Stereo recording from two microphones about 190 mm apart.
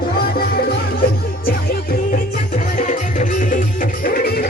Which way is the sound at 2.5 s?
40° left (ahead or behind).